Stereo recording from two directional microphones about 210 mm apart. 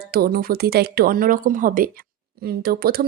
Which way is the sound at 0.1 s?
45° right (ahead or behind).